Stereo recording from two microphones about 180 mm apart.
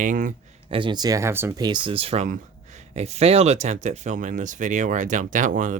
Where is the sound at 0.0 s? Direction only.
45° right (ahead or behind).